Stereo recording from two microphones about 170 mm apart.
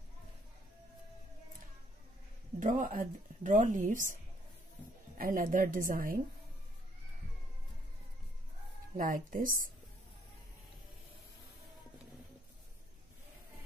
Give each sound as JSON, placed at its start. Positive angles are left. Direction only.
{"t": 2.6, "sound": "speech", "side_deg": -50}
{"t": 8.9, "sound": "speech", "side_deg": -55}